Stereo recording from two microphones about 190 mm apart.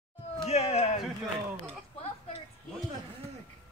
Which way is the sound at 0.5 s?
35° left (ahead or behind).